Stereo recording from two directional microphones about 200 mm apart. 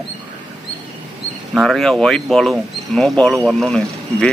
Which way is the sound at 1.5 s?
Centre (ahead or behind).